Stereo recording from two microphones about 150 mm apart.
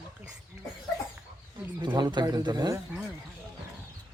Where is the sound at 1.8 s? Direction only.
30° right (ahead or behind).